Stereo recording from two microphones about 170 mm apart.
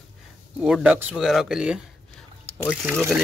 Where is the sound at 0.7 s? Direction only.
5° right (ahead or behind).